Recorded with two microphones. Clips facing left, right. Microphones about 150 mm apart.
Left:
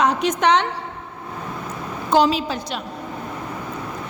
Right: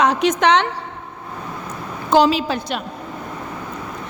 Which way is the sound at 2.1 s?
75° right (ahead or behind).